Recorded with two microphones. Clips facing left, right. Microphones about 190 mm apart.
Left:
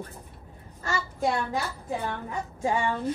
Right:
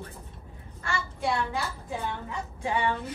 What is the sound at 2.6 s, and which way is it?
Speech, 45° left (ahead or behind).